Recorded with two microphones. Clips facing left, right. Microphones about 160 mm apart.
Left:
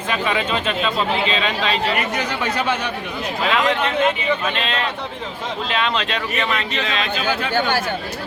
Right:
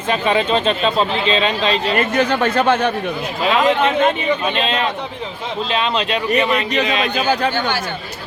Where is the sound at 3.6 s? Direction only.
20° right (ahead or behind).